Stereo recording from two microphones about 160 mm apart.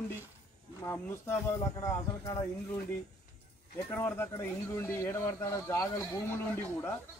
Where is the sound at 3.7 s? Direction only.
15° left (ahead or behind).